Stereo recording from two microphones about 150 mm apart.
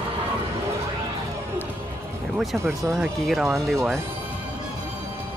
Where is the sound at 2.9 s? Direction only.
Centre (ahead or behind).